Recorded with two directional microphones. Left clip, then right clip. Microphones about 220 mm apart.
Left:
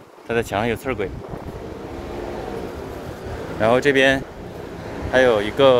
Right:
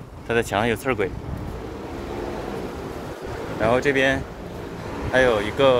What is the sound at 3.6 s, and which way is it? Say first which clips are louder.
Speech: left 4 dB; 25° left (ahead or behind).